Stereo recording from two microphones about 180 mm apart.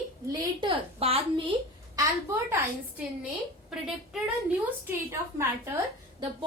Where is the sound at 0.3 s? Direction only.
30° right (ahead or behind).